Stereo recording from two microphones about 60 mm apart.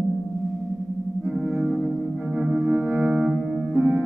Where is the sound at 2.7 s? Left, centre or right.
Right.